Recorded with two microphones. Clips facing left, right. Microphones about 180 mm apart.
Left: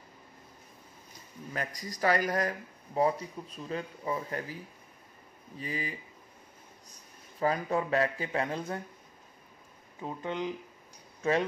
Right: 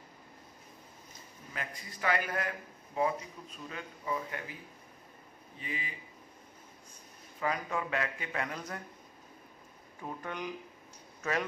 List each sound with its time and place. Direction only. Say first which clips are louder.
1.5 s a man's voice: left 6 dB; 40° left (ahead or behind)
5.6 s a man's voice: left 5 dB; 40° left (ahead or behind)
10.0 s speech: left 5 dB; 20° left (ahead or behind)